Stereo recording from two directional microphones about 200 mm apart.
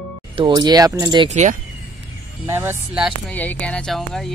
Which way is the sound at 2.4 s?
10° right (ahead or behind).